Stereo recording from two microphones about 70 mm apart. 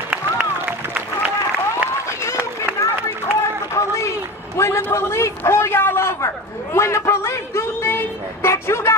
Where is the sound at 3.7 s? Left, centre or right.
Left.